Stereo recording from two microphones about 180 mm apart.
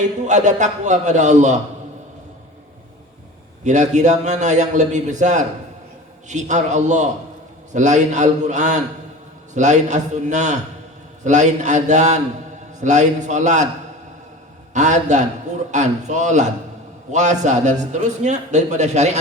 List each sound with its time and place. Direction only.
0.3 s a man's voice: 40° right (ahead or behind)
3.6 s a man's voice: 40° right (ahead or behind)
14.7 s a man's voice: 40° right (ahead or behind)